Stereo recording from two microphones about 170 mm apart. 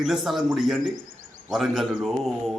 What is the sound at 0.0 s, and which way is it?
Speech, centre (ahead or behind).